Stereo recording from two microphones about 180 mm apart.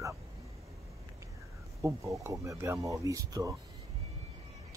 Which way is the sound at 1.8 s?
15° right (ahead or behind).